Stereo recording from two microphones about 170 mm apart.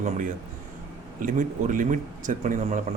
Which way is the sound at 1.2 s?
50° right (ahead or behind).